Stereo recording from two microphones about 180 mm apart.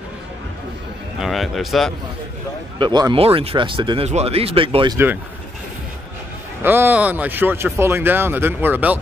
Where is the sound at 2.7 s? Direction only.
25° right (ahead or behind).